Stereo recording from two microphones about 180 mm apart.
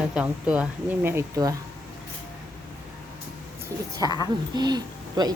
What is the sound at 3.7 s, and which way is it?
Speech, 20° right (ahead or behind).